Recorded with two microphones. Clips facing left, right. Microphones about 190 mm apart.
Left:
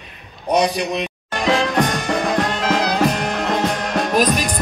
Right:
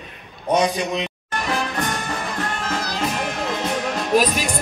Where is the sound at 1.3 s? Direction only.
90° left; by 4.1 s 70° left (ahead or behind).